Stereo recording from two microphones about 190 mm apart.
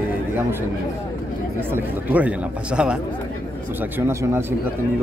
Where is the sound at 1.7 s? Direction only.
10° right (ahead or behind).